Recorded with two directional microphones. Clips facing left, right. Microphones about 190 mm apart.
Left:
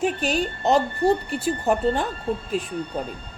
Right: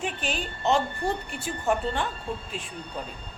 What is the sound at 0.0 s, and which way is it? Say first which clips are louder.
Speech: left 8 dB; 40° left (ahead or behind).